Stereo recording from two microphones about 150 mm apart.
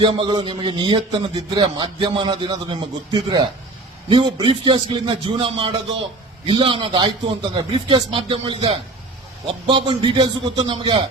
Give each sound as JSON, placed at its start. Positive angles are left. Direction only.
{"t": 0.0, "sound": "a man's voice", "side_deg": -35}